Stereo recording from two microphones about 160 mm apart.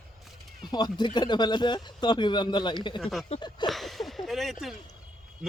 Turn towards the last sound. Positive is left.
turn(degrees=0)  # may be behind; listen again after turning